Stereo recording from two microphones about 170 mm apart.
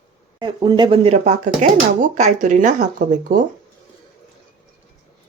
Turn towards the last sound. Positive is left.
turn(degrees=-50)  # may be behind; listen again after turning